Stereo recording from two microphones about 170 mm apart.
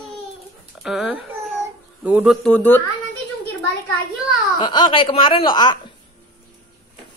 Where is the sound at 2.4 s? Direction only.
10° left (ahead or behind).